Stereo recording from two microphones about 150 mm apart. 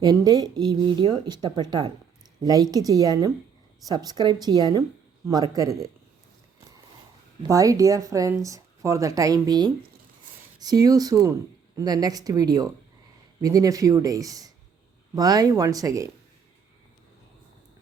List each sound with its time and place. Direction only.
0.0 s speech: 25° right (ahead or behind)
7.4 s speech: 20° right (ahead or behind)